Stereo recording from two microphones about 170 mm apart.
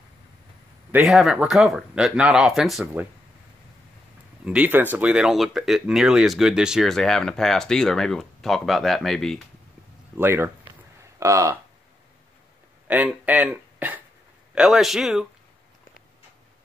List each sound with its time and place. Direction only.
0.9 s speech: centre (ahead or behind)
4.5 s speech: 10° right (ahead or behind)
10.1 s speech: 15° right (ahead or behind)
12.8 s speech: 10° right (ahead or behind)